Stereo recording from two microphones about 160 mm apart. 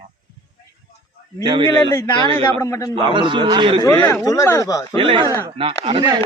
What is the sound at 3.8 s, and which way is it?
Speech, 15° left (ahead or behind).